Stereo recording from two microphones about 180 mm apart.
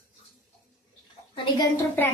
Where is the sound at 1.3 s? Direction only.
25° left (ahead or behind).